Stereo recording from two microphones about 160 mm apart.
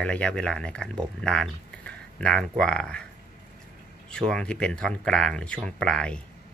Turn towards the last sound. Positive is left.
turn(degrees=5)  # may be behind; listen again after turning